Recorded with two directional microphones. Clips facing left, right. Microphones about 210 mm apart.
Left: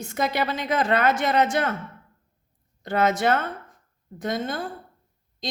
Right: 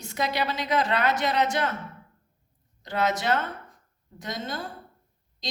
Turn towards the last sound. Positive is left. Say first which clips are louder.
# left 6 dB
turn(degrees=55)  # may be behind; listen again after turning